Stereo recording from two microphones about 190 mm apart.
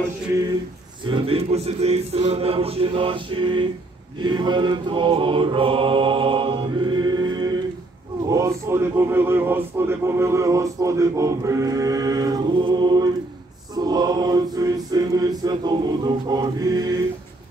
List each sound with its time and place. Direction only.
1.0 s mantra: 30° right (ahead or behind)
8.3 s speech: 15° right (ahead or behind)
13.7 s mantra: 20° right (ahead or behind)